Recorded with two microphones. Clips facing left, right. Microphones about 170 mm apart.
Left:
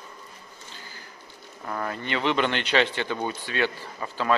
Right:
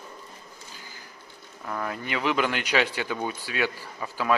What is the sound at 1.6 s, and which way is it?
A man's voice, centre (ahead or behind).